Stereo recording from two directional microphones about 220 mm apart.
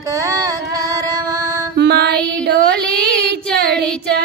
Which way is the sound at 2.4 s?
50° right (ahead or behind).